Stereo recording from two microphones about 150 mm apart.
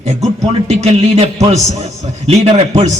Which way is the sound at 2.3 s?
35° right (ahead or behind).